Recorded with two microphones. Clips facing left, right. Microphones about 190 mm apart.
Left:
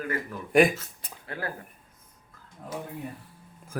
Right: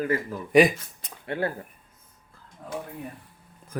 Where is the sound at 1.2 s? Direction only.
25° right (ahead or behind).